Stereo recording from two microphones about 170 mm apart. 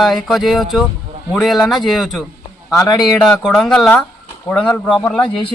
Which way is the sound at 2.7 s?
20° left (ahead or behind).